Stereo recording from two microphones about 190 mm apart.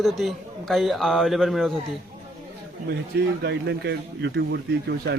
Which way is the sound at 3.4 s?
65° right (ahead or behind).